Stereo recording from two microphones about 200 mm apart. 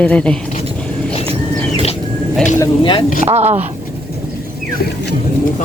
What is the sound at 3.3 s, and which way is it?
Speech, 35° right (ahead or behind).